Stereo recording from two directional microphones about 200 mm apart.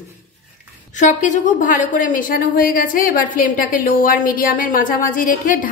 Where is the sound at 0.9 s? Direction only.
40° left (ahead or behind).